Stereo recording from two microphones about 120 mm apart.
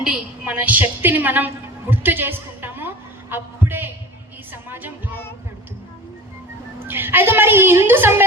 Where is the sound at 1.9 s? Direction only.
15° right (ahead or behind).